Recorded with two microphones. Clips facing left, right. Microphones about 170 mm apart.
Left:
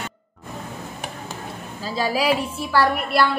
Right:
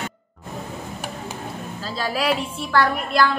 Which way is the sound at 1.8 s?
10° left (ahead or behind).